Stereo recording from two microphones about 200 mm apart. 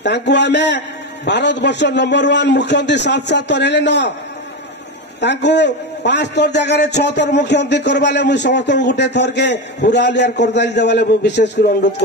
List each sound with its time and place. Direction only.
0.0 s a man's voice: 60° left (ahead or behind)
5.2 s a man's voice: 60° left (ahead or behind)